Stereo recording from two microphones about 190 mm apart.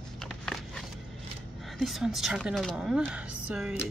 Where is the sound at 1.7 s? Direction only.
Centre (ahead or behind).